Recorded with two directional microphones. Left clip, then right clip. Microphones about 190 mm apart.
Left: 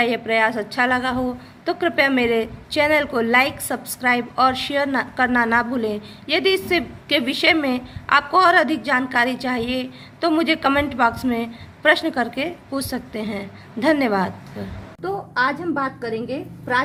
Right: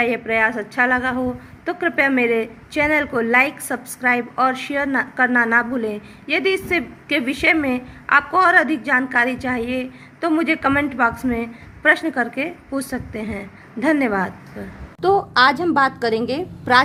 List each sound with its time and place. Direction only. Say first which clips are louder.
0.0 s a woman's voice: even; centre (ahead or behind)
15.0 s a woman's voice: right 7 dB; 50° right (ahead or behind)